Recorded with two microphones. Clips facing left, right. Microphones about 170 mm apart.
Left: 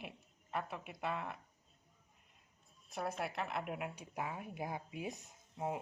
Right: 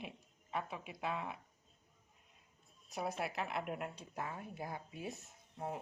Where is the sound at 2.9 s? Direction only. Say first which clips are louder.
Even; centre (ahead or behind).